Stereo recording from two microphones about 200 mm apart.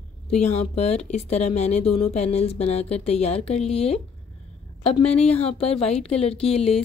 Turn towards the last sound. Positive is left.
turn(degrees=30)  # may be behind; listen again after turning